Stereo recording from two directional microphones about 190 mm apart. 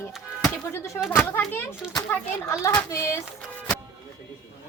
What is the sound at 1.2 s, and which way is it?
Speech, 10° left (ahead or behind).